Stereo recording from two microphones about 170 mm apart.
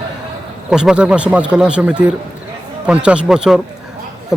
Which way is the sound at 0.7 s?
5° right (ahead or behind).